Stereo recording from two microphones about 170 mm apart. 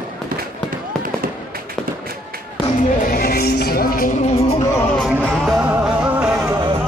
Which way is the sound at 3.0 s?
65° left (ahead or behind).